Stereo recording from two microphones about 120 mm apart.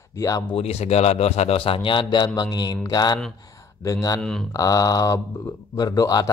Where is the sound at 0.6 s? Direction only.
60° left (ahead or behind); by 4.2 s 30° left (ahead or behind).